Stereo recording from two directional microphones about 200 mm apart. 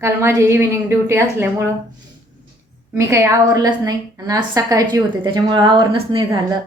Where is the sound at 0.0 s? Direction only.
15° right (ahead or behind).